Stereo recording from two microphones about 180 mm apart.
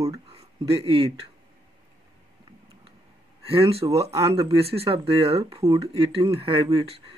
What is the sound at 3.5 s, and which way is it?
Speech, 35° right (ahead or behind).